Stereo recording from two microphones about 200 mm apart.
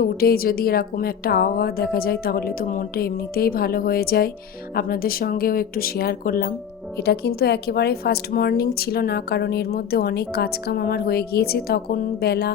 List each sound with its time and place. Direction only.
0.0 s a woman's voice: 50° left (ahead or behind)